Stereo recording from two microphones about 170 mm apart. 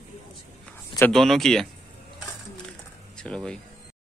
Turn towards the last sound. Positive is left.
turn(degrees=5)  # may be behind; listen again after turning